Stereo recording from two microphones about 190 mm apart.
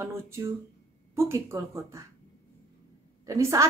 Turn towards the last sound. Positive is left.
turn(degrees=-15)  # may be behind; listen again after turning